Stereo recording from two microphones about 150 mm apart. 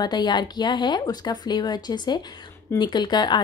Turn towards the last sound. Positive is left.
turn(degrees=30)  # may be behind; listen again after turning